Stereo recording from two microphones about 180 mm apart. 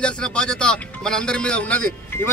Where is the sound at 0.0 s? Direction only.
5° left (ahead or behind).